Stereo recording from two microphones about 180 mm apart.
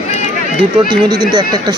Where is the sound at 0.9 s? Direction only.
25° right (ahead or behind).